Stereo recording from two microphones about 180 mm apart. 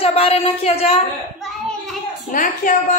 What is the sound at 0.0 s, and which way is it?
Speech, 35° left (ahead or behind).